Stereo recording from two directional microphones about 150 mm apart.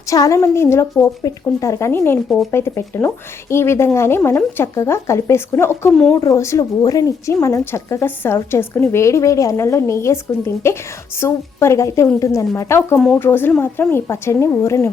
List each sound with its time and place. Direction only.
0.1 s a woman's voice: 20° left (ahead or behind)
5.9 s speech: 5° left (ahead or behind)
6.1 s a woman's voice: 20° left (ahead or behind)